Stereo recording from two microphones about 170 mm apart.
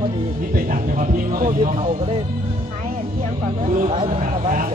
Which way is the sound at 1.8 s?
35° right (ahead or behind).